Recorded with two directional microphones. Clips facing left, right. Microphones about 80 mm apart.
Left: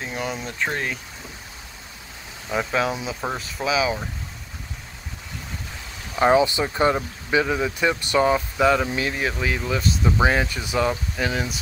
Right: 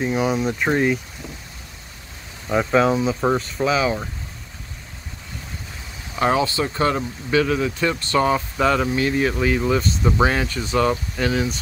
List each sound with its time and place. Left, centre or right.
0.0 s speech: centre
0.5 s speech: centre
2.5 s speech: centre
6.1 s speech: centre